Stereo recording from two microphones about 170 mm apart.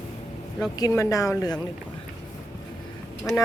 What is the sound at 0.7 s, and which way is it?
Speech, 20° left (ahead or behind).